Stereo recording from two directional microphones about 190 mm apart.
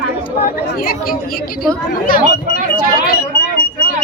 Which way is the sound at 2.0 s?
50° left (ahead or behind).